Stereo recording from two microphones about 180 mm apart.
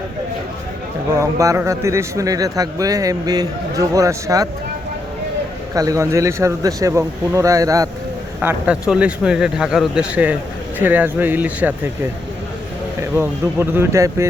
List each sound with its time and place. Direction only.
1.1 s a man's voice: 15° right (ahead or behind)
5.7 s a man's voice: 20° right (ahead or behind)
13.0 s a man's voice: 15° right (ahead or behind)